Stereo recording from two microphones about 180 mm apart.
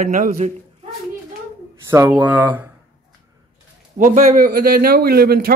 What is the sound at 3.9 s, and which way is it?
Speech, 45° right (ahead or behind).